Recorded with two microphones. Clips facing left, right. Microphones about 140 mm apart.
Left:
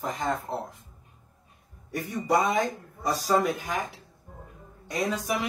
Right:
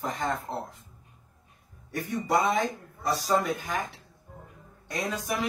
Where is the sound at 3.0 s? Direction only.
Centre (ahead or behind).